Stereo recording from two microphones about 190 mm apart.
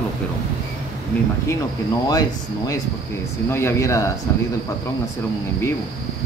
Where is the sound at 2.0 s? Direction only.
20° left (ahead or behind).